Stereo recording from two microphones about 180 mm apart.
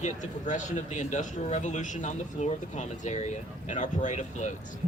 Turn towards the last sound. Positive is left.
turn(degrees=40)  # may be behind; listen again after turning